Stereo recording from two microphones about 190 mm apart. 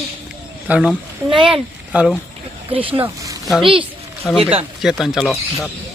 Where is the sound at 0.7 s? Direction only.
5° right (ahead or behind).